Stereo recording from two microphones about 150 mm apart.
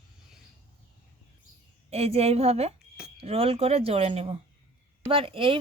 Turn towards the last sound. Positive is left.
turn(degrees=-35)  # may be behind; listen again after turning